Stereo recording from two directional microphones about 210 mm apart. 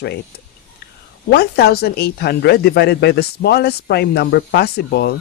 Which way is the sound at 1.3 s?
50° left (ahead or behind).